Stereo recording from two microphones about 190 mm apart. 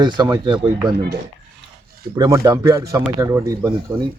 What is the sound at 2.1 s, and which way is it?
Speech, 20° right (ahead or behind).